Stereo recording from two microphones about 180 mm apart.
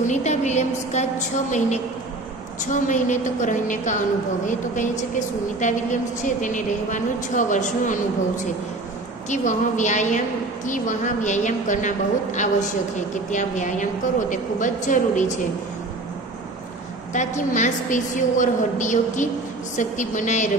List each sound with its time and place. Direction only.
0.0 s a woman's voice: 40° left (ahead or behind)
17.1 s a woman's voice: 40° left (ahead or behind)